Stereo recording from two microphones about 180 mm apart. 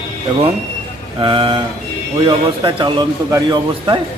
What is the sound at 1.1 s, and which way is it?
Speech, 25° right (ahead or behind).